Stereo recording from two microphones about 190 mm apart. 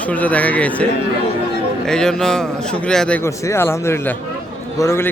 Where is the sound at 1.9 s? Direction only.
5° left (ahead or behind).